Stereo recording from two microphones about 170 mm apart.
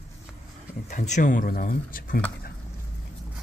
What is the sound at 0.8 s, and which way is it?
Speech, 45° left (ahead or behind).